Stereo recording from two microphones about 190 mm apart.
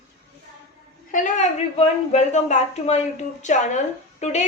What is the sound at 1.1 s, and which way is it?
A woman's voice, 40° left (ahead or behind).